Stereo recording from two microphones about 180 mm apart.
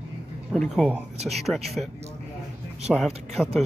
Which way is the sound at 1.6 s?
35° right (ahead or behind).